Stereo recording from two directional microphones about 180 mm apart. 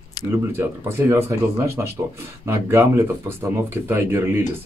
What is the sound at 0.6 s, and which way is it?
Speech, 15° right (ahead or behind).